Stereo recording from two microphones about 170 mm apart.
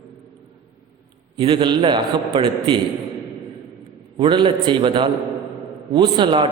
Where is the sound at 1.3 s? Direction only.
30° right (ahead or behind).